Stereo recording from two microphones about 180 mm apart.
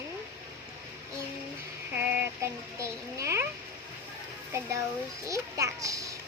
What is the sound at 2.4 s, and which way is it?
A child's voice, 15° right (ahead or behind).